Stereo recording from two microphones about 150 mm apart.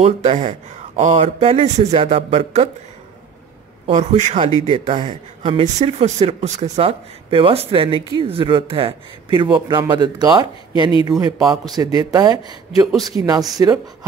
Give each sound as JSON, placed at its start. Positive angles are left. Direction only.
{"t": 0.0, "sound": "speech", "side_deg": -50}
{"t": 1.1, "sound": "speech", "side_deg": -40}
{"t": 3.8, "sound": "a man's voice", "side_deg": -45}
{"t": 12.8, "sound": "speech", "side_deg": 0}
{"t": 13.1, "sound": "a man's voice", "side_deg": -25}